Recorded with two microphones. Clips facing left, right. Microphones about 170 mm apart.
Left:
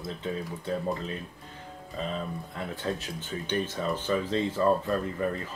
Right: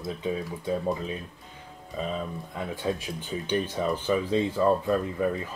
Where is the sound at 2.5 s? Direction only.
10° right (ahead or behind).